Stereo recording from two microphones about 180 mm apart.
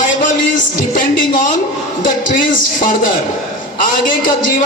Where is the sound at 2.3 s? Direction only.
50° left (ahead or behind).